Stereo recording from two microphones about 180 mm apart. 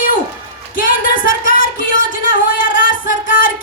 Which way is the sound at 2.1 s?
50° left (ahead or behind).